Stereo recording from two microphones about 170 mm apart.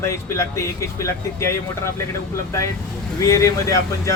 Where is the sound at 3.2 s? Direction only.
20° left (ahead or behind).